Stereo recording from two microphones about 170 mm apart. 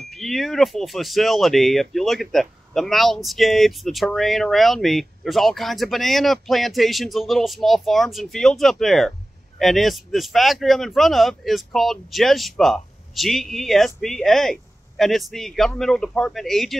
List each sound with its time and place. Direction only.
0.1 s speech: centre (ahead or behind)